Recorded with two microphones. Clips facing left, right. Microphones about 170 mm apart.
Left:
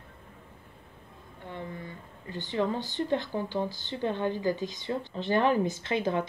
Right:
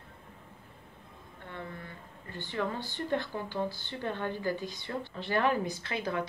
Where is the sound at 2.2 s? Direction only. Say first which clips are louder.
Left 5 dB; 15° left (ahead or behind).